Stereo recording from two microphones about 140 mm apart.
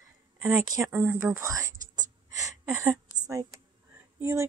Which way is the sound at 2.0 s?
25° right (ahead or behind).